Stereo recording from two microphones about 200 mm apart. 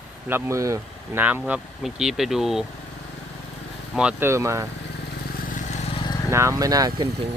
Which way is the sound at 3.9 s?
10° right (ahead or behind).